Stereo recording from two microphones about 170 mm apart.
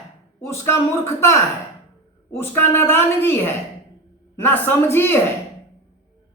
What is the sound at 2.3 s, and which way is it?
A man's voice, 10° left (ahead or behind).